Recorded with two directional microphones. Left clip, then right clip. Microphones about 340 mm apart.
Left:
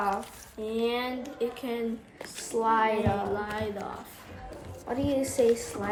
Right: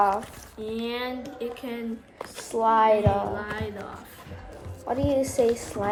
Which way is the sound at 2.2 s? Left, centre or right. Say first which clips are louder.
Right 4 dB; centre.